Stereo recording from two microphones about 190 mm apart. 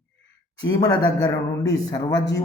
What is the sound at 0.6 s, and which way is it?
Speech, 20° left (ahead or behind).